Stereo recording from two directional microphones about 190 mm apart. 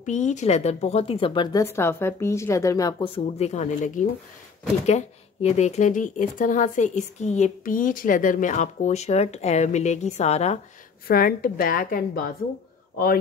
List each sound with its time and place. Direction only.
0.0 s a woman's voice: 40° left (ahead or behind); by 3.1 s 20° left (ahead or behind)
3.1 s speech: 35° left (ahead or behind)
11.1 s a woman's voice: 50° left (ahead or behind)